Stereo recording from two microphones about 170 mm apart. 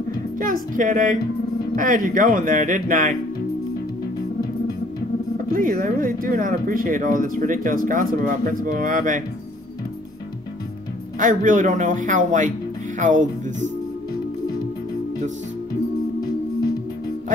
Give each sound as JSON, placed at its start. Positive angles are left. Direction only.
{"t": 0.4, "sound": "speech", "side_deg": -50}
{"t": 5.5, "sound": "speech", "side_deg": -50}
{"t": 11.1, "sound": "speech", "side_deg": -50}